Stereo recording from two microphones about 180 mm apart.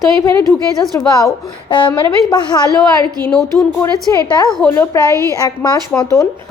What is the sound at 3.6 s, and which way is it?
Speech, 15° left (ahead or behind).